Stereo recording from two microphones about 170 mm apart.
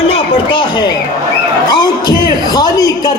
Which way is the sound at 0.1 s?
25° left (ahead or behind).